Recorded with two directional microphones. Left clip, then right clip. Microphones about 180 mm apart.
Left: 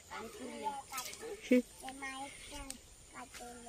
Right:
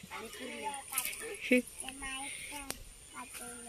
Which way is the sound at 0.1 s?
5° left (ahead or behind).